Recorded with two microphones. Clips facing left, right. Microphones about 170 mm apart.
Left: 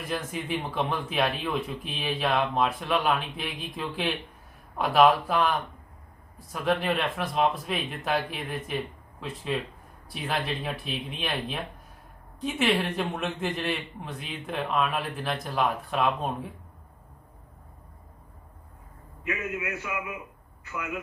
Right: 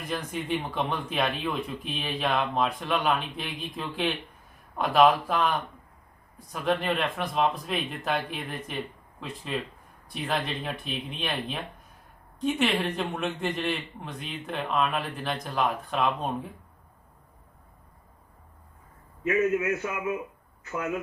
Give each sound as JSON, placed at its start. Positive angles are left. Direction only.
{"t": 0.0, "sound": "a man's voice", "side_deg": 0}
{"t": 19.2, "sound": "a man's voice", "side_deg": -40}